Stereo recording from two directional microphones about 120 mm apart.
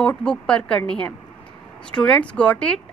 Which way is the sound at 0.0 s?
10° left (ahead or behind).